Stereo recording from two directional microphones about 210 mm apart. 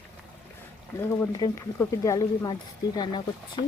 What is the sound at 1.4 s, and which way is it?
Speech, 15° left (ahead or behind).